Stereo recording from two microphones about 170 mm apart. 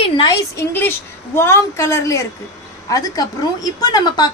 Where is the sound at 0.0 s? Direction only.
30° left (ahead or behind).